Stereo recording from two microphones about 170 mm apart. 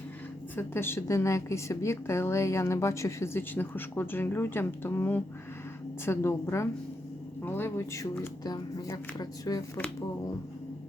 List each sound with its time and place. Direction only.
0.5 s a woman's voice: 15° left (ahead or behind)